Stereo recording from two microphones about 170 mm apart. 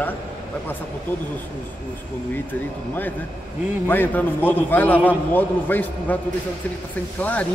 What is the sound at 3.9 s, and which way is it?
A man's voice, 10° left (ahead or behind).